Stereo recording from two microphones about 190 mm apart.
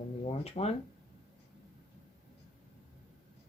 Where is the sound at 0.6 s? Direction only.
35° left (ahead or behind).